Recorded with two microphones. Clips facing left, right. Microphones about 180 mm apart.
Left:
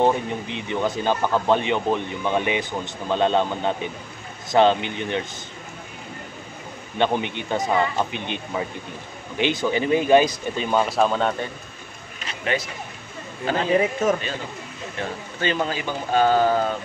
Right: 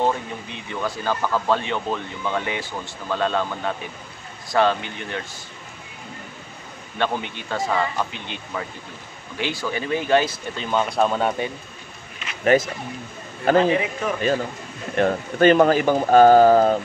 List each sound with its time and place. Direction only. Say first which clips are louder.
0.0 s speech: left 3 dB; 20° left (ahead or behind)
7.0 s speech: left 3 dB; 20° left (ahead or behind); by 11.5 s 10° right (ahead or behind)
12.5 s speech: right 8 dB; 40° right (ahead or behind)
14.0 s speech: left 5 dB; 40° left (ahead or behind)
15.0 s speech: right 11 dB; 60° right (ahead or behind); by 16.7 s 40° right (ahead or behind)